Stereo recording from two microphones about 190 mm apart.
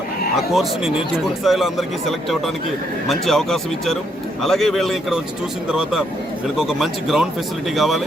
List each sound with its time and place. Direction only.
0.3 s speech: centre (ahead or behind)